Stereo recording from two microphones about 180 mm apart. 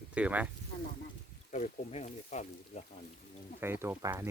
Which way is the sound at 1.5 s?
40° left (ahead or behind).